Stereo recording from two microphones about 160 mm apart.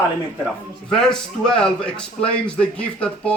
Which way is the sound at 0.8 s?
5° left (ahead or behind).